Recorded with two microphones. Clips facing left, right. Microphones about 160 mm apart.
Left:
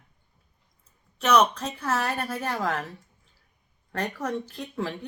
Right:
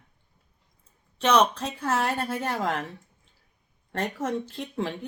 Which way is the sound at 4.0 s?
25° right (ahead or behind).